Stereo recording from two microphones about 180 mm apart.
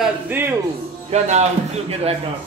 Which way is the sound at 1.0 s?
40° right (ahead or behind).